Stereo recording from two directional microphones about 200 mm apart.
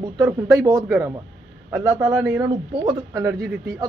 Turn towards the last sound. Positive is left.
turn(degrees=-15)  # may be behind; listen again after turning